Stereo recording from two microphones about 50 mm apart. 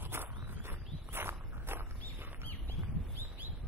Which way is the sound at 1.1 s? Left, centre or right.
Right.